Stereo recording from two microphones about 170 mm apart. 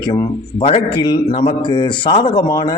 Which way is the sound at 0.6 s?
30° left (ahead or behind).